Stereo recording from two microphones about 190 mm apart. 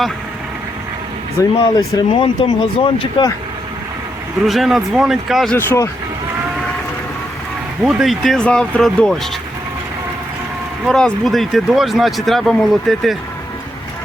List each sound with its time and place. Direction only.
1.4 s speech: 15° left (ahead or behind)
4.4 s speech: centre (ahead or behind)
5.5 s speech: 15° left (ahead or behind)
7.9 s speech: centre (ahead or behind)
10.8 s speech: centre (ahead or behind)